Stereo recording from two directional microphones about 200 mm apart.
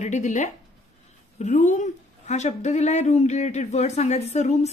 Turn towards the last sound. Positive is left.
turn(degrees=35)  # may be behind; listen again after turning